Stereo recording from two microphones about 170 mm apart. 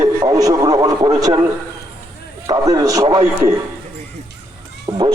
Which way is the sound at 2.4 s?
20° right (ahead or behind).